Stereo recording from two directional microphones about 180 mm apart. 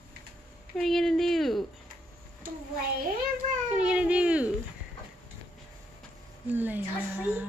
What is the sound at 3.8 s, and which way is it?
Baby cry, 5° right (ahead or behind).